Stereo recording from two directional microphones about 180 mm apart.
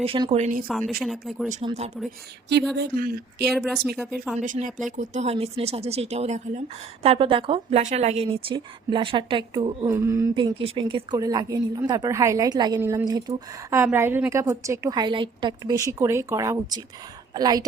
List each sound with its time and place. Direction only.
0.0 s speech: 30° right (ahead or behind)
0.7 s speech: centre (ahead or behind)
1.6 s speech: 35° right (ahead or behind)
2.7 s a woman's voice: 60° right (ahead or behind)
3.5 s speech: centre (ahead or behind)
4.4 s a woman's voice: 45° right (ahead or behind); by 7.8 s 30° right (ahead or behind)
7.8 s a woman's voice: 40° right (ahead or behind); by 17.7 s 20° right (ahead or behind)